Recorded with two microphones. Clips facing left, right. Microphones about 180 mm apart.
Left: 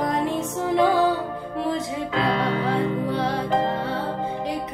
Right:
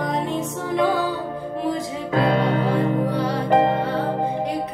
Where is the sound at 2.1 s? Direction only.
50° right (ahead or behind).